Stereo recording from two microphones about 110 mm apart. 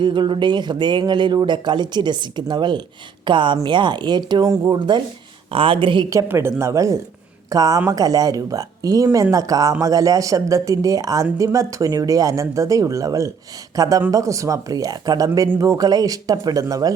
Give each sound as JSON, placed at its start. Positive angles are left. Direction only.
{"t": 0.0, "sound": "speech", "side_deg": -45}
{"t": 5.5, "sound": "speech", "side_deg": -55}
{"t": 6.1, "sound": "speech", "side_deg": -25}